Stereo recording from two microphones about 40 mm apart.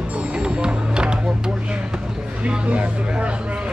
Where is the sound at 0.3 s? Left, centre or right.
Right.